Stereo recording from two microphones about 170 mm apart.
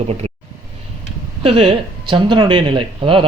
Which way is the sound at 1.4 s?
35° right (ahead or behind).